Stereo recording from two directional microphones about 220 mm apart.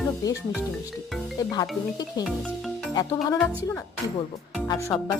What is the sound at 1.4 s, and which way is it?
Speech, 20° left (ahead or behind).